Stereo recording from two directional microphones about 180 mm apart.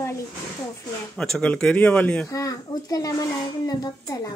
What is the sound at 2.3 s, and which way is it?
A child's voice, 20° left (ahead or behind).